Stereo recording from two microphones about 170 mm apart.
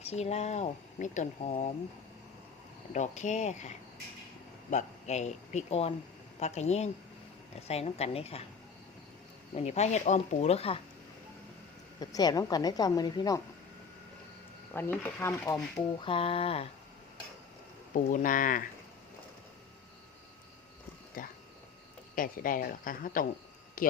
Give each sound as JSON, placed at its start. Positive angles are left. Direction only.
{"t": 0.0, "sound": "speech", "side_deg": 40}
{"t": 2.9, "sound": "speech", "side_deg": 45}
{"t": 9.6, "sound": "speech", "side_deg": 40}
{"t": 11.9, "sound": "a woman's voice", "side_deg": 20}
{"t": 14.7, "sound": "speech", "side_deg": 10}
{"t": 16.0, "sound": "speech", "side_deg": 30}
{"t": 17.9, "sound": "speech", "side_deg": 50}
{"t": 21.2, "sound": "speech", "side_deg": 55}